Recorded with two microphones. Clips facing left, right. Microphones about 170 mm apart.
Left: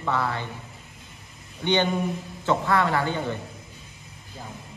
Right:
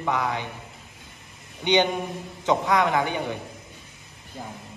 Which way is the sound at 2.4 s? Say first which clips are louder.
Right 1 dB; 15° right (ahead or behind).